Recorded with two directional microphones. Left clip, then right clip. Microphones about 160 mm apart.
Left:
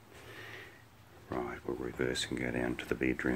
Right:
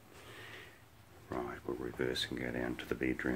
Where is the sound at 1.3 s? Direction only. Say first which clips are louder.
Left 2 dB; 15° left (ahead or behind).